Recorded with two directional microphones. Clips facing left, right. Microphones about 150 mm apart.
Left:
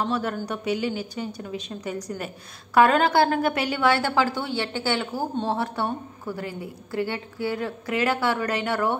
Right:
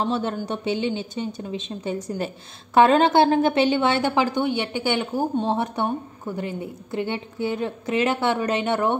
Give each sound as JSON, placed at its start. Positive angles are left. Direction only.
{"t": 0.0, "sound": "a woman's voice", "side_deg": -25}